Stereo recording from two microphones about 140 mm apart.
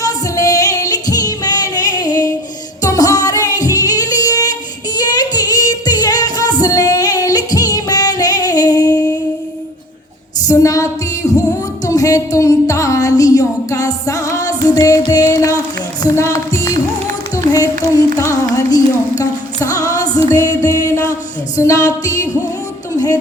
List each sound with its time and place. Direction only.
0.0 s music: 25° left (ahead or behind)
10.5 s music: 20° left (ahead or behind)